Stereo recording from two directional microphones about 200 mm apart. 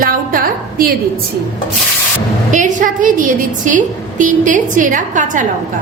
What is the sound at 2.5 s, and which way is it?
A woman's voice, 40° right (ahead or behind).